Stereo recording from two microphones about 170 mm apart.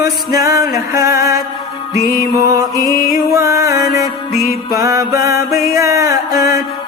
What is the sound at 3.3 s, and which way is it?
Music, 20° right (ahead or behind).